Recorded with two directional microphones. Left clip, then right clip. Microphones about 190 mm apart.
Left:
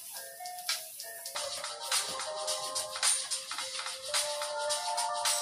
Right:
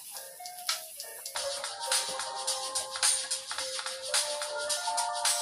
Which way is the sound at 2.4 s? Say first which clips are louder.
Right 1 dB; 30° right (ahead or behind).